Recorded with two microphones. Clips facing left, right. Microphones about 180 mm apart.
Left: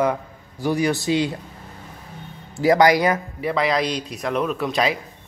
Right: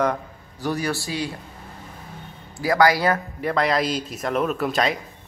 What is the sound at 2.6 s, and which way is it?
Speech, 20° left (ahead or behind).